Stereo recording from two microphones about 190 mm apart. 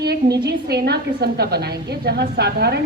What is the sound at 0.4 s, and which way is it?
A woman's voice, 55° right (ahead or behind).